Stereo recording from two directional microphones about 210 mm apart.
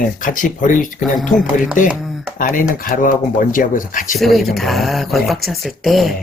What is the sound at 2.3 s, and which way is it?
Speech, 40° left (ahead or behind).